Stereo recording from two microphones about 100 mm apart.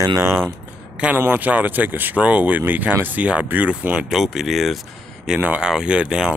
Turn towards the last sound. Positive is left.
turn(degrees=-10)  # may be behind; listen again after turning